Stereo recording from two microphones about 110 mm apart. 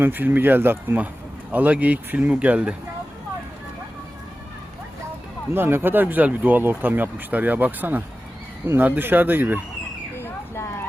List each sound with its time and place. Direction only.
0.0 s speech: 15° right (ahead or behind)
5.5 s speech: 20° right (ahead or behind)
10.2 s a sound: 20° left (ahead or behind)